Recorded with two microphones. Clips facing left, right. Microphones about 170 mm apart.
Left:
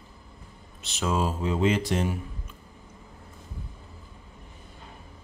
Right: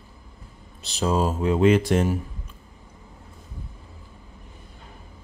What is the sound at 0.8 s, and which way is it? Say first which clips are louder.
Speech: right 4 dB; 35° right (ahead or behind).